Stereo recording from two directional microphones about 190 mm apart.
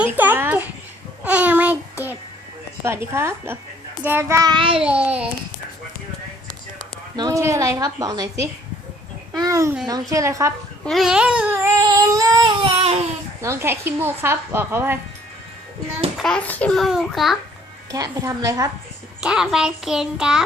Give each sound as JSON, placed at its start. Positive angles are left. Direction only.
{"t": 0.0, "sound": "a sound", "side_deg": -10}
{"t": 1.2, "sound": "child singing", "side_deg": -10}
{"t": 2.8, "sound": "babbling", "side_deg": -15}
{"t": 4.8, "sound": "babbling", "side_deg": -5}
{"t": 7.2, "sound": "a woman's voice", "side_deg": -20}
{"t": 9.4, "sound": "babbling", "side_deg": -15}
{"t": 10.8, "sound": "babbling", "side_deg": 0}
{"t": 13.4, "sound": "babbling", "side_deg": -15}
{"t": 16.1, "sound": "a child's voice", "side_deg": 5}
{"t": 17.9, "sound": "a woman's voice", "side_deg": -20}
{"t": 19.2, "sound": "a child's voice", "side_deg": -5}